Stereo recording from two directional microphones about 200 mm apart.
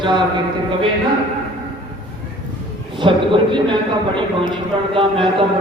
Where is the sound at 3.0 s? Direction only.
25° right (ahead or behind).